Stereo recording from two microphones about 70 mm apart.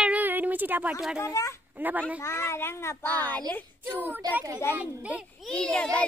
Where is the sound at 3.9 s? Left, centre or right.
Right.